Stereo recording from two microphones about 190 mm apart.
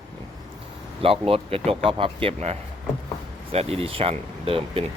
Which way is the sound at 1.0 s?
30° right (ahead or behind).